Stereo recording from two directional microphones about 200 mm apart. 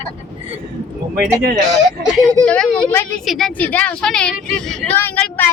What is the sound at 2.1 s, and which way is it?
A woman's voice, 5° left (ahead or behind).